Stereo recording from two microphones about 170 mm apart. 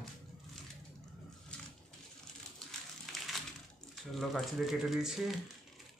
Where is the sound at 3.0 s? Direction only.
Centre (ahead or behind).